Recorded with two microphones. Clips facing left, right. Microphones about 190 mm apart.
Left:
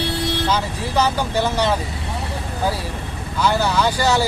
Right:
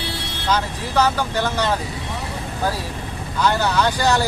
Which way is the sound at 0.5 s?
15° left (ahead or behind).